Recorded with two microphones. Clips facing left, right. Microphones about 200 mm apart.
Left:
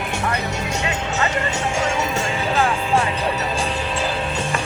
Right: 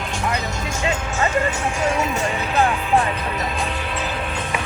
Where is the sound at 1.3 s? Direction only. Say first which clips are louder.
Right 1 dB; 90° left.